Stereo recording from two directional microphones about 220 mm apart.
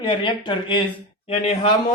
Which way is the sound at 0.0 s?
20° left (ahead or behind).